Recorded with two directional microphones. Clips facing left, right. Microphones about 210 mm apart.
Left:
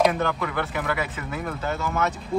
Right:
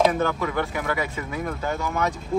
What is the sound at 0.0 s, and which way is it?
Speech, centre (ahead or behind).